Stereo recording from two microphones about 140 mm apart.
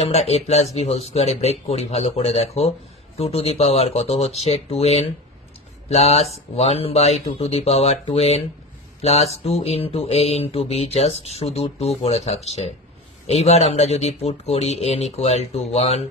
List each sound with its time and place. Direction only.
0.0 s speech: 45° left (ahead or behind)